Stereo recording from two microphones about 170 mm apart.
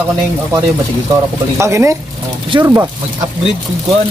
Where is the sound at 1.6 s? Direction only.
15° right (ahead or behind).